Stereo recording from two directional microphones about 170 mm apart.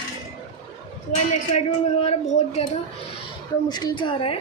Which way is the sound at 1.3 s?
35° left (ahead or behind).